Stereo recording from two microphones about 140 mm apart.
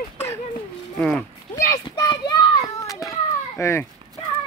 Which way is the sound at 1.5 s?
20° left (ahead or behind).